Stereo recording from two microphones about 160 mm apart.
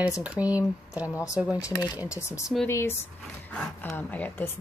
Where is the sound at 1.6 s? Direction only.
25° left (ahead or behind).